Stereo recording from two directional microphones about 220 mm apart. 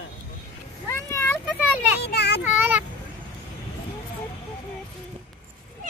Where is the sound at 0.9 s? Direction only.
10° left (ahead or behind).